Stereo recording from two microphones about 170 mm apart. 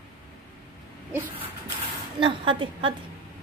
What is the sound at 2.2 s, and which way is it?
Speech, 30° right (ahead or behind).